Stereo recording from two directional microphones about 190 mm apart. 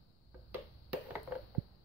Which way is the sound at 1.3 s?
10° right (ahead or behind).